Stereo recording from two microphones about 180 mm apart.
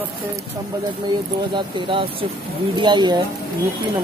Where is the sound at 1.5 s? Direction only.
30° right (ahead or behind).